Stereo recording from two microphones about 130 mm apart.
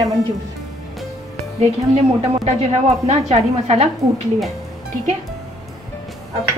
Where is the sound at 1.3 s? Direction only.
55° right (ahead or behind).